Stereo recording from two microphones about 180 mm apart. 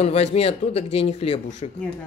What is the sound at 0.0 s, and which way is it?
Speech, 35° left (ahead or behind).